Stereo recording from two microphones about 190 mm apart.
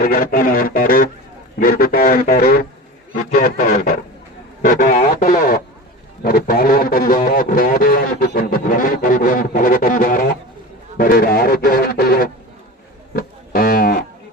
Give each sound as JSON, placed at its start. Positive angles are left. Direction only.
{"t": 0.0, "sound": "speech", "side_deg": 50}
{"t": 13.1, "sound": "music", "side_deg": 50}